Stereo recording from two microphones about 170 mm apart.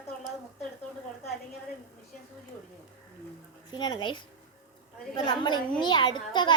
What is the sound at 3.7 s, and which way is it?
A child's voice, 25° left (ahead or behind).